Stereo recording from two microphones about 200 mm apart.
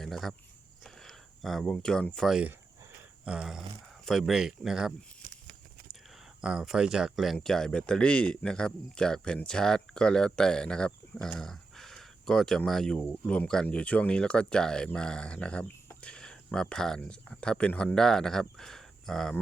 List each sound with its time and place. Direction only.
0.0 s speech: centre (ahead or behind)
5.2 s a sound: 45° right (ahead or behind)
6.4 s speech: 5° right (ahead or behind)